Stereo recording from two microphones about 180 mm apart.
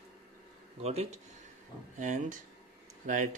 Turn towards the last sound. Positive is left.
turn(degrees=-40)  # may be behind; listen again after turning